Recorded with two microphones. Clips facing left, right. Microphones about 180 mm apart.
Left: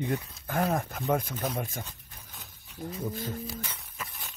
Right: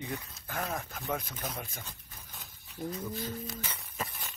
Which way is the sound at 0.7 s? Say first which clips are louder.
Left 7 dB; 55° left (ahead or behind).